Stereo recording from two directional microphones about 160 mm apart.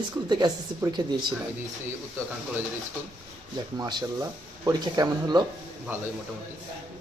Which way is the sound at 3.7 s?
25° right (ahead or behind).